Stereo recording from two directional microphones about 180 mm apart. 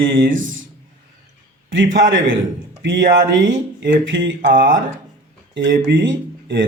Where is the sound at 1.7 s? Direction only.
90° right.